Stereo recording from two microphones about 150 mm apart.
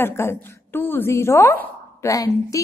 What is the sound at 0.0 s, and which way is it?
A woman's voice, 15° left (ahead or behind).